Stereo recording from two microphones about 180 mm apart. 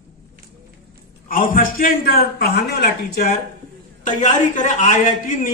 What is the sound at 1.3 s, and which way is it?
A man's voice, 50° left (ahead or behind).